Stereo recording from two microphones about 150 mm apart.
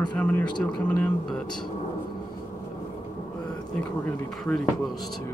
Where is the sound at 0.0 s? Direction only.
10° left (ahead or behind).